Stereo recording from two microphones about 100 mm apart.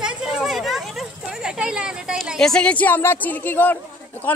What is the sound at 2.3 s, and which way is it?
Speech, 5° left (ahead or behind).